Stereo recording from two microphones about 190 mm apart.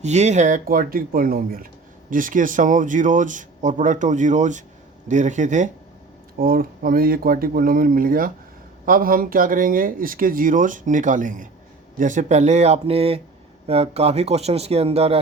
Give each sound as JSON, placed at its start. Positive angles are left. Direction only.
{"t": 0.0, "sound": "speech", "side_deg": -35}
{"t": 6.3, "sound": "speech", "side_deg": -50}